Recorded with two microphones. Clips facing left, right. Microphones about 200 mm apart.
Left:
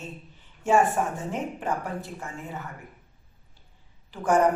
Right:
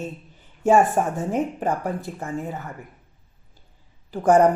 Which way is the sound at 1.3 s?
40° right (ahead or behind).